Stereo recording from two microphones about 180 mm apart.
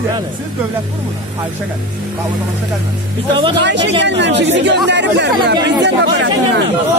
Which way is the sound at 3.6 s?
80° right.